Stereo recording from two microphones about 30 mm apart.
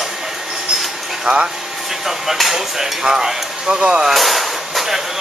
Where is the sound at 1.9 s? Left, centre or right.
Centre.